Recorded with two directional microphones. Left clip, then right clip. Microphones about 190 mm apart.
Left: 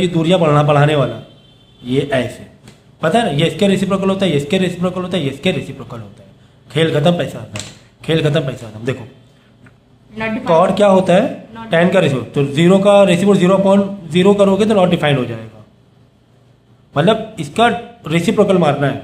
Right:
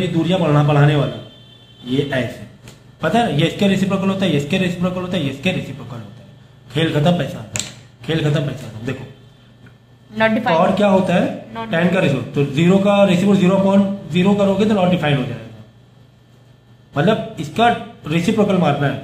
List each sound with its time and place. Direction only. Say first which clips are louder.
0.2 s a man's voice: left 5 dB; 55° left (ahead or behind)
3.0 s a man's voice: left 2 dB; 40° left (ahead or behind)
10.1 s a woman's voice: right 5 dB; 45° right (ahead or behind)
10.5 s a man's voice: left 7 dB; 40° left (ahead or behind)
16.9 s a man's voice: left 3 dB; 45° left (ahead or behind)